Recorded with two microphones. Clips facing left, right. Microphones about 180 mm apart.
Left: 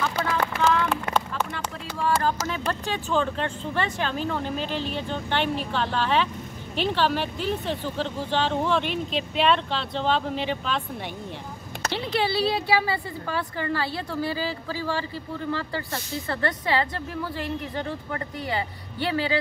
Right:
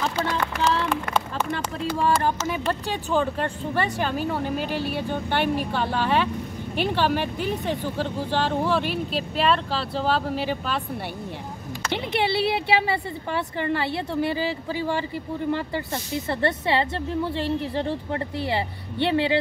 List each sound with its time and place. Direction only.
0.2 s speech: 30° right (ahead or behind)
2.2 s speech: 15° right (ahead or behind)
11.9 s speech: 20° right (ahead or behind)